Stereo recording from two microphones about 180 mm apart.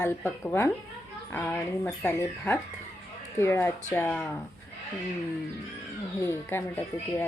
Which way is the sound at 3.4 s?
15° left (ahead or behind).